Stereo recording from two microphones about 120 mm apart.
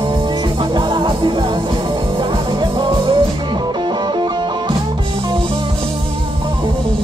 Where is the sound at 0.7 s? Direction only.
40° right (ahead or behind).